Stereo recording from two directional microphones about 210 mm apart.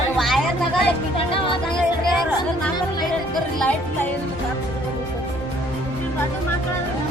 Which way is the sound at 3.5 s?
5° left (ahead or behind).